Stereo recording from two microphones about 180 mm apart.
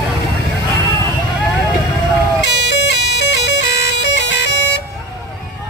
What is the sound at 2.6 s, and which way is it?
Bagpipes, 75° left (ahead or behind).